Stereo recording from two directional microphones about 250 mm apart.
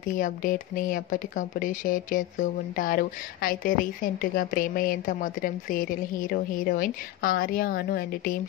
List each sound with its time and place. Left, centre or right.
0.0 s speech: left